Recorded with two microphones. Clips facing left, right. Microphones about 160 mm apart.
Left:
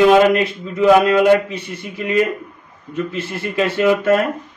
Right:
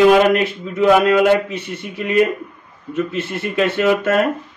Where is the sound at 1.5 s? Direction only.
25° right (ahead or behind).